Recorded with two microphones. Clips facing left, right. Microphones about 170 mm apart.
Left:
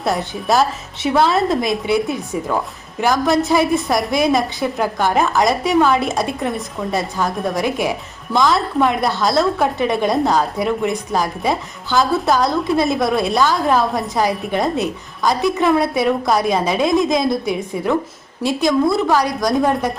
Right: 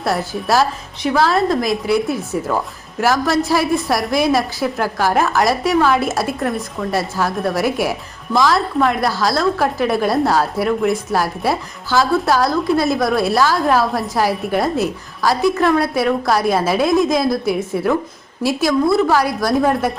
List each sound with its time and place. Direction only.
0.0 s a woman's voice: centre (ahead or behind)